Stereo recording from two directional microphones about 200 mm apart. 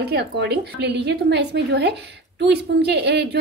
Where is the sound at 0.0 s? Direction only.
55° right (ahead or behind).